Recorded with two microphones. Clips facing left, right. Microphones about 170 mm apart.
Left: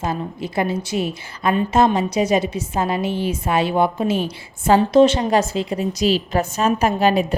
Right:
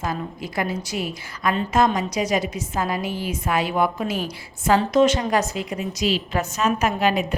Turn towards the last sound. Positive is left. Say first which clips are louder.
# left 4 dB
turn(degrees=35)  # may be behind; listen again after turning